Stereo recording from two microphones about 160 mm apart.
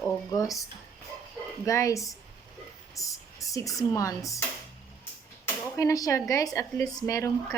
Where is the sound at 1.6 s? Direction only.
20° left (ahead or behind).